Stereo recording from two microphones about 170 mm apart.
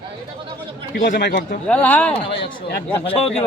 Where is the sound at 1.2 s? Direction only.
80° left.